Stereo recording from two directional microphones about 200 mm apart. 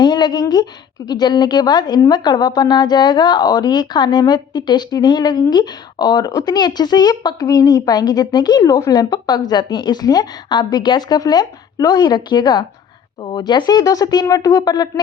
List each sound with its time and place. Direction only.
0.0 s a woman's voice: 20° left (ahead or behind)